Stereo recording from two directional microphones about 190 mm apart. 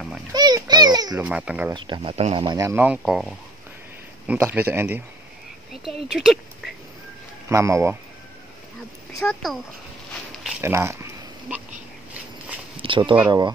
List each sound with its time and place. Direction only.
0.3 s a sound: 20° right (ahead or behind)
1.1 s speech: 5° right (ahead or behind)
1.7 s speech: 25° right (ahead or behind)
3.0 s speech: centre (ahead or behind)
6.1 s speech: centre (ahead or behind)
7.4 s speech: 15° right (ahead or behind)
9.2 s speech: centre (ahead or behind)
10.6 s speech: 15° right (ahead or behind)
12.7 s a sound: 25° right (ahead or behind)